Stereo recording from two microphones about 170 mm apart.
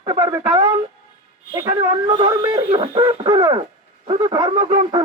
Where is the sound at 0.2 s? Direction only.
15° right (ahead or behind).